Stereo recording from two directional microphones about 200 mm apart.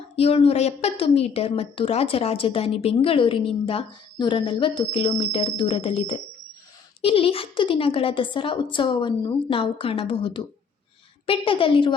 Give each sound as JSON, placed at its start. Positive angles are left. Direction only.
{"t": 0.2, "sound": "a woman's voice", "side_deg": 30}